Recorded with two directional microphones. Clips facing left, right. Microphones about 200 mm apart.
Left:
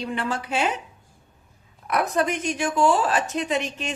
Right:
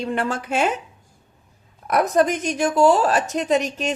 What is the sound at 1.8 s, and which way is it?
A woman's voice, 40° right (ahead or behind).